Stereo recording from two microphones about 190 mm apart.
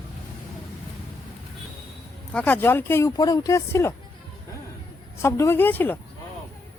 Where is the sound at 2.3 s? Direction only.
10° left (ahead or behind).